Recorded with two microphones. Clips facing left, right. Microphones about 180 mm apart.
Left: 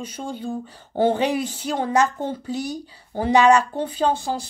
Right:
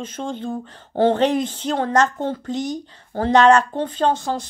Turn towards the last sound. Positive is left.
turn(degrees=10)  # may be behind; listen again after turning